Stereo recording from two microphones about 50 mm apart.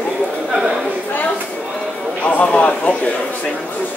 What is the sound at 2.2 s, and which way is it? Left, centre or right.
Speech, left.